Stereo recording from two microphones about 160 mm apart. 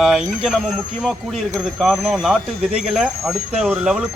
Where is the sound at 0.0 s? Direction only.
Centre (ahead or behind).